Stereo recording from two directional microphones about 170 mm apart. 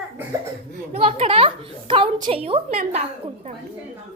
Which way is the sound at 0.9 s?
35° right (ahead or behind).